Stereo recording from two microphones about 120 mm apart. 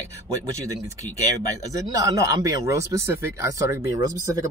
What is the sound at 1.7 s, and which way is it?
Speech, 30° right (ahead or behind).